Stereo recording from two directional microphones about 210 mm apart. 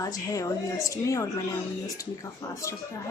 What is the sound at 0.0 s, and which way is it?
Speech, 15° left (ahead or behind).